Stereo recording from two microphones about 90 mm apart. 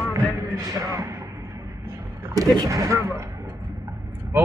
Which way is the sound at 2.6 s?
35° right (ahead or behind).